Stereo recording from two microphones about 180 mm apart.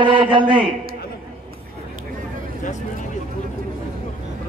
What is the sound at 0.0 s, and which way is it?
Speech, 25° right (ahead or behind).